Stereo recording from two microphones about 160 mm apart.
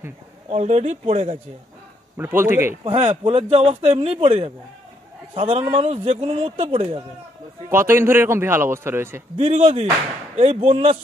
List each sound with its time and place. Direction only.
0.5 s speech: 45° right (ahead or behind)
2.1 s a man's voice: 15° right (ahead or behind)
2.8 s speech: 40° right (ahead or behind)
7.7 s a man's voice: 15° right (ahead or behind)
9.4 s speech: 40° right (ahead or behind)